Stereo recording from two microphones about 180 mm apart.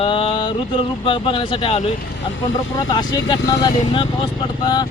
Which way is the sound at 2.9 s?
25° left (ahead or behind).